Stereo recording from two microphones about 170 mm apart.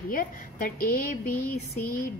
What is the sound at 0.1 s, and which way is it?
A woman's voice, 55° left (ahead or behind).